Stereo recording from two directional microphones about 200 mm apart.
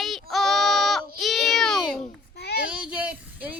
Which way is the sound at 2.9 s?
5° right (ahead or behind).